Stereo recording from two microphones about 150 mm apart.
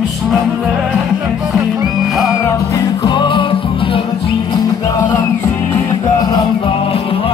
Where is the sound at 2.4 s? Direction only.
20° left (ahead or behind).